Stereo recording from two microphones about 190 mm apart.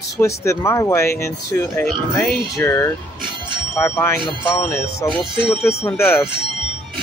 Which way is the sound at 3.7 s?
15° left (ahead or behind).